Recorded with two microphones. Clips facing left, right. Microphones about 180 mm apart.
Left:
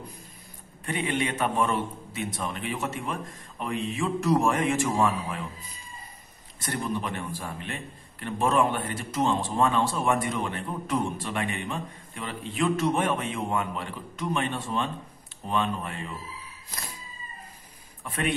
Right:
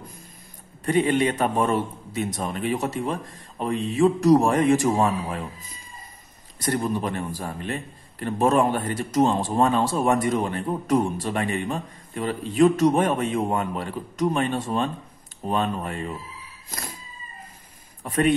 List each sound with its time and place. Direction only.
0.8 s a man's voice: 40° right (ahead or behind)
6.6 s a man's voice: 40° right (ahead or behind)
18.0 s a man's voice: 40° right (ahead or behind)